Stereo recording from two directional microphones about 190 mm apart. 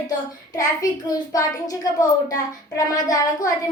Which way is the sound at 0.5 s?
20° left (ahead or behind).